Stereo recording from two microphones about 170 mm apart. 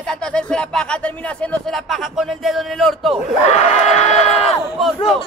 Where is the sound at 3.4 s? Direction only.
40° left (ahead or behind).